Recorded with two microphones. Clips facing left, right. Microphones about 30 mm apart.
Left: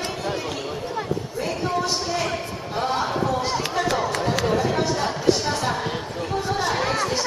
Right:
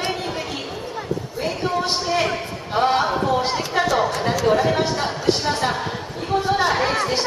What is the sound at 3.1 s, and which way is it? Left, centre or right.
Speech, right.